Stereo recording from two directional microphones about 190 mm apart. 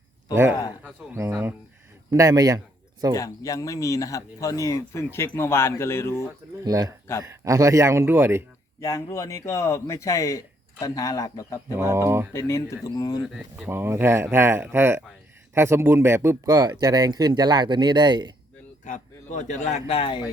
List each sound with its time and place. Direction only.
0.9 s speech: 10° right (ahead or behind)
3.2 s speech: 15° left (ahead or behind)
6.7 s speech: 20° right (ahead or behind)
8.8 s speech: 15° left (ahead or behind)
11.8 s speech: 15° right (ahead or behind)
12.3 s speech: 15° left (ahead or behind)
13.2 s speech: centre (ahead or behind)
13.7 s speech: 15° right (ahead or behind)
18.9 s a man's voice: 40° left (ahead or behind)